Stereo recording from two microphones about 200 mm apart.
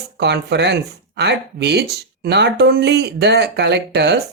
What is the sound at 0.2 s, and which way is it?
Speech, 60° right (ahead or behind).